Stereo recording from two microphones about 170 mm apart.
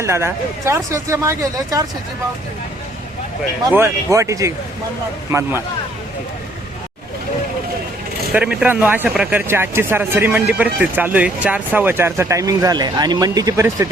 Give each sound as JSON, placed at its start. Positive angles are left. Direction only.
{"t": 0.0, "sound": "speech", "side_deg": -15}
{"t": 3.8, "sound": "speech", "side_deg": -15}
{"t": 8.3, "sound": "speech", "side_deg": -5}